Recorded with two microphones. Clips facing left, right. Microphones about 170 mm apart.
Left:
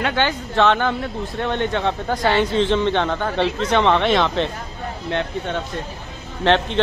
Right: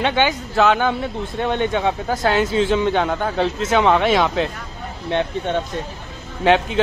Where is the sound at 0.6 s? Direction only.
5° right (ahead or behind).